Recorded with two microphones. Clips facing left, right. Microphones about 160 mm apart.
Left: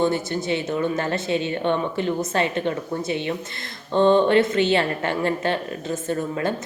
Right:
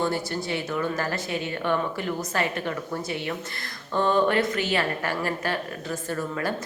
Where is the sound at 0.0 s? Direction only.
20° left (ahead or behind).